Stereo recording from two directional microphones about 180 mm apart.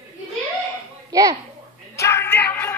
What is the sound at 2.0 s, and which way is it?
Music, 15° left (ahead or behind).